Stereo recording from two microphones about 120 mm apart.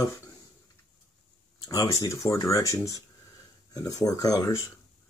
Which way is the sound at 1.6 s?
30° left (ahead or behind).